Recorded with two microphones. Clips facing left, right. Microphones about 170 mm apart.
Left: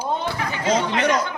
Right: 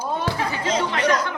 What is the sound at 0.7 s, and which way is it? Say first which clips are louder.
Speech: left 2 dB; 20° left (ahead or behind).